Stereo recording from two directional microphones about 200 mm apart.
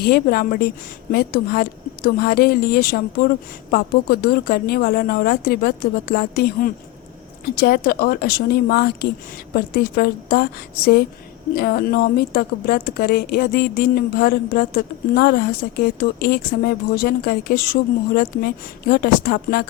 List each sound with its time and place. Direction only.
0.0 s a woman's voice: 50° left (ahead or behind)
11.5 s a woman's voice: 50° left (ahead or behind)